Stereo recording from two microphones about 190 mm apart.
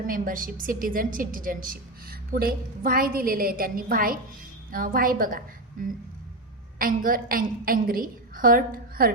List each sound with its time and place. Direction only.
0.1 s a woman's voice: 45° right (ahead or behind)
6.7 s a woman's voice: 45° right (ahead or behind)